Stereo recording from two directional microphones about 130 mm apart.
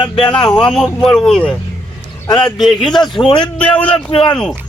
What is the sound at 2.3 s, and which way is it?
Speech, 35° left (ahead or behind).